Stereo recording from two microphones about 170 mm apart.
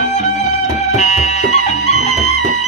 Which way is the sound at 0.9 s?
45° left (ahead or behind).